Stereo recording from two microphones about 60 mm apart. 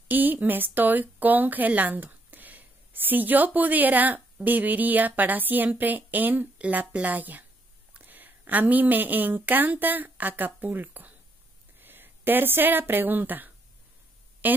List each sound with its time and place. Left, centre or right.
0.1 s speech: right